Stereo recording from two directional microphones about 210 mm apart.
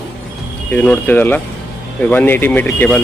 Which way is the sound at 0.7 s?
10° left (ahead or behind).